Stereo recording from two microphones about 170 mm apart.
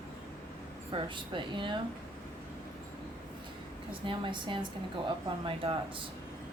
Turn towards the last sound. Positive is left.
turn(degrees=-30)  # may be behind; listen again after turning